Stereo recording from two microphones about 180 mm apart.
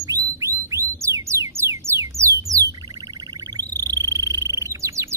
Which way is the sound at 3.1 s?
20° right (ahead or behind).